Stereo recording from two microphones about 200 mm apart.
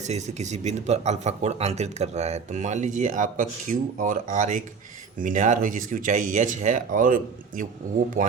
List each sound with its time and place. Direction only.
0.0 s speech: 35° right (ahead or behind)